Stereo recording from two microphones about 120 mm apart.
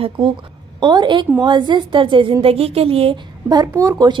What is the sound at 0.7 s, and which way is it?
A woman's voice, 40° right (ahead or behind).